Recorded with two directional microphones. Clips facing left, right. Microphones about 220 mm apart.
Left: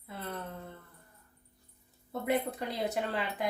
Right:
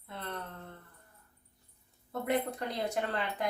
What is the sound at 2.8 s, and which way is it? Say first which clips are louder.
Speech: even; 5° left (ahead or behind).